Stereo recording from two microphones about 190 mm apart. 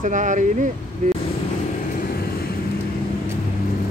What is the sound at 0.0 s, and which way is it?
Speech, 40° right (ahead or behind).